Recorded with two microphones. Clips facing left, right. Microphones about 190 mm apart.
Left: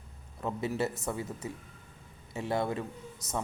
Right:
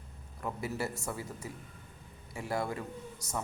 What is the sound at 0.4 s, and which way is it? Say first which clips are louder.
A man's voice: left 4 dB; 20° left (ahead or behind).